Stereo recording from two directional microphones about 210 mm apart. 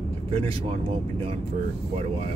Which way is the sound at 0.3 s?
25° right (ahead or behind).